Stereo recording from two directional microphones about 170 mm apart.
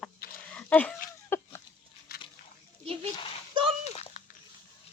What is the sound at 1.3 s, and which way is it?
Chicken, 15° left (ahead or behind).